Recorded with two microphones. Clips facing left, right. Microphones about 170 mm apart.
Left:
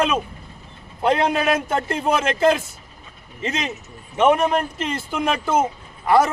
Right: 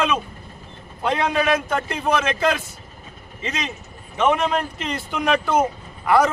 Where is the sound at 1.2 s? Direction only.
30° left (ahead or behind).